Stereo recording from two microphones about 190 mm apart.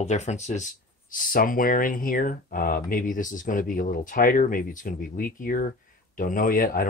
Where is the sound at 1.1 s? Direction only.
45° left (ahead or behind).